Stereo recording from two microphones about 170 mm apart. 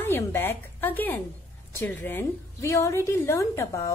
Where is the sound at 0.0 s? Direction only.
10° left (ahead or behind).